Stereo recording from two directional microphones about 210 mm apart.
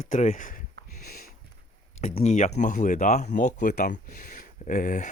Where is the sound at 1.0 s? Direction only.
40° left (ahead or behind).